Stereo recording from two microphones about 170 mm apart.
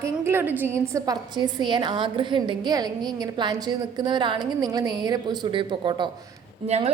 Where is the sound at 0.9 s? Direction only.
25° right (ahead or behind).